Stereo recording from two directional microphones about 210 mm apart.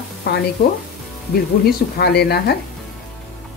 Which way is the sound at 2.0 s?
50° left (ahead or behind).